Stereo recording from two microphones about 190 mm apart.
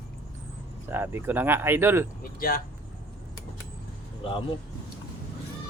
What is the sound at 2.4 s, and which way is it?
Speech, 50° left (ahead or behind).